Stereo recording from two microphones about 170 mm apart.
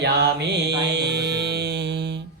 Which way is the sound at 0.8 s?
90° right.